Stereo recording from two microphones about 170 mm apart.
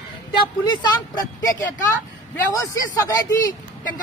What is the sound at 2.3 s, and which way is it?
Speech, 20° left (ahead or behind).